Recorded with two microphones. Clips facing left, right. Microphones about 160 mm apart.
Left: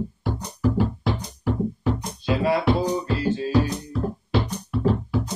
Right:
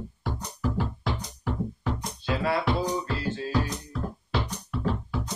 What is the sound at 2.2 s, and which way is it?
Music, 15° left (ahead or behind).